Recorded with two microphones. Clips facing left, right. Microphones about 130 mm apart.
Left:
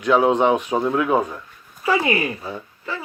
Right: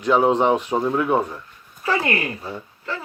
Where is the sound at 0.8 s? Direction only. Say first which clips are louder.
Left 1 dB; centre (ahead or behind).